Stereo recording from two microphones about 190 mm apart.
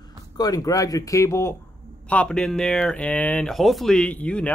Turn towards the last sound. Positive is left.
turn(degrees=5)  # may be behind; listen again after turning